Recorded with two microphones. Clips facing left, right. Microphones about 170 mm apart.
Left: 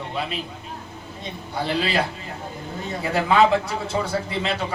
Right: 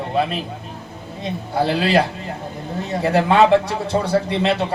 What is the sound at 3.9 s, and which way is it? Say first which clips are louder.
Speech: right 5 dB; 50° right (ahead or behind).